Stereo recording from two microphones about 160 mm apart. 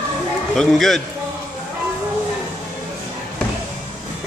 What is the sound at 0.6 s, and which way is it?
Speech, centre (ahead or behind).